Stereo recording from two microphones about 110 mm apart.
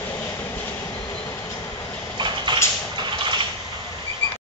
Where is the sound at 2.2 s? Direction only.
45° right (ahead or behind).